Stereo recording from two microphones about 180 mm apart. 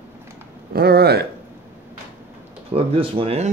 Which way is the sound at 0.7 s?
60° right (ahead or behind).